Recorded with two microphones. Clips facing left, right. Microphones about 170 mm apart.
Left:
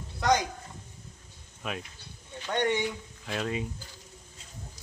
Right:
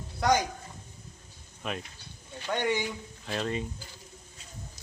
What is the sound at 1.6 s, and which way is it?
Speech, 5° left (ahead or behind).